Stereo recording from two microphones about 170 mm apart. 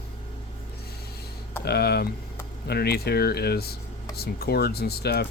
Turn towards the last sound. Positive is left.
turn(degrees=70)  # may be behind; listen again after turning